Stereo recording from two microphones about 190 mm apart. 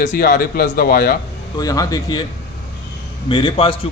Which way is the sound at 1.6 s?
20° left (ahead or behind).